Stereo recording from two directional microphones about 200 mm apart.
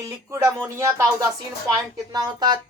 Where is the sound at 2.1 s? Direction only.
20° right (ahead or behind).